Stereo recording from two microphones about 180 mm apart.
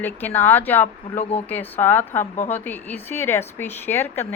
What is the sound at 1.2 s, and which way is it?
Speech, 35° left (ahead or behind).